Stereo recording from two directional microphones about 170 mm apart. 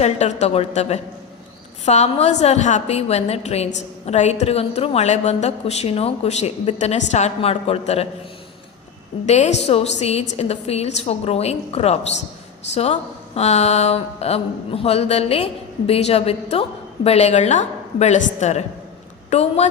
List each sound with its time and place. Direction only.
0.0 s a woman's voice: 40° left (ahead or behind)
9.2 s a woman's voice: 40° left (ahead or behind)